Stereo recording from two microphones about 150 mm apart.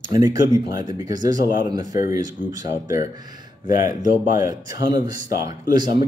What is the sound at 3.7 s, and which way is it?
Speech, 60° left (ahead or behind).